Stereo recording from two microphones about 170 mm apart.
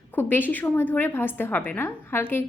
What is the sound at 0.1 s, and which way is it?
A woman's voice, 10° left (ahead or behind).